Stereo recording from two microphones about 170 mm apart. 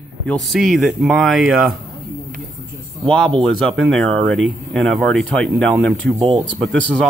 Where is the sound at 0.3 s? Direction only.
Centre (ahead or behind).